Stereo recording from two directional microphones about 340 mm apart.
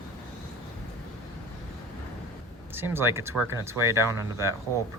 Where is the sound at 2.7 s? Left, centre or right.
Centre.